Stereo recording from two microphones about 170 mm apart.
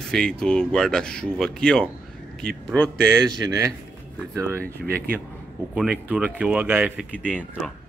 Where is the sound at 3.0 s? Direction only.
20° right (ahead or behind).